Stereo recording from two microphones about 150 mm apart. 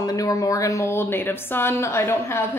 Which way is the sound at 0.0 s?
25° left (ahead or behind).